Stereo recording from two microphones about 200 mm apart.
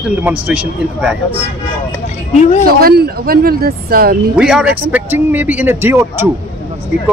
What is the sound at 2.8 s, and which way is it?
Speech, 50° right (ahead or behind).